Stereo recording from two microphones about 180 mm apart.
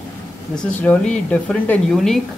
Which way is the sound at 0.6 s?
5° left (ahead or behind).